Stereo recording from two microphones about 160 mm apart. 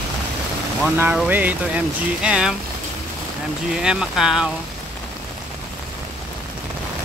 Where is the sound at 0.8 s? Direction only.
10° right (ahead or behind).